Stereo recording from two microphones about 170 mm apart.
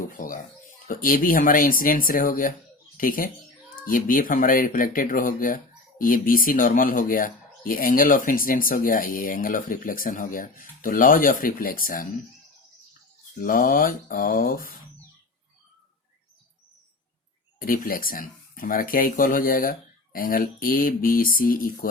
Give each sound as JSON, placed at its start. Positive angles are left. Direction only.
{"t": 0.2, "sound": "speech", "side_deg": 50}
{"t": 13.4, "sound": "speech", "side_deg": 55}
{"t": 17.7, "sound": "speech", "side_deg": 55}